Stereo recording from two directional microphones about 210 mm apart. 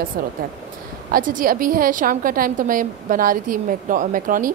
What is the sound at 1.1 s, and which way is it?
A woman's voice, 40° right (ahead or behind).